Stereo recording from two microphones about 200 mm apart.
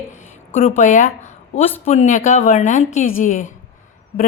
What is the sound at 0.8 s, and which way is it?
A woman's voice, 35° left (ahead or behind).